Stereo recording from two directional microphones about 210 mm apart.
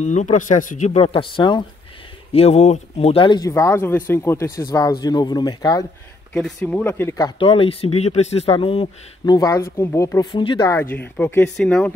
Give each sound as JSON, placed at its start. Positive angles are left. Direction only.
{"t": 0.0, "sound": "speech", "side_deg": 35}
{"t": 6.3, "sound": "speech", "side_deg": 5}